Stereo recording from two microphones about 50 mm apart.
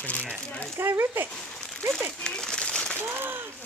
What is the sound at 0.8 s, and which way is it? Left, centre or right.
Speech, right.